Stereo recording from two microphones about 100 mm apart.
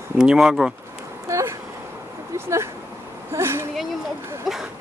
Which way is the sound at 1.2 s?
30° right (ahead or behind).